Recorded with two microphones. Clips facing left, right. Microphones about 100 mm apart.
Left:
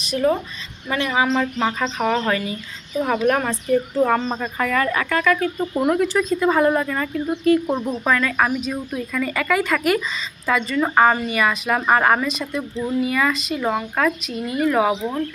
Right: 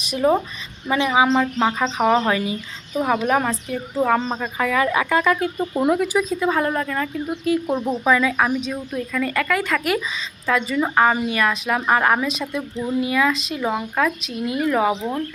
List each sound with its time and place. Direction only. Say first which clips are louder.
0.1 s a woman's voice: right 1 dB; 20° right (ahead or behind)
5.9 s speech: left 1 dB; 5° right (ahead or behind)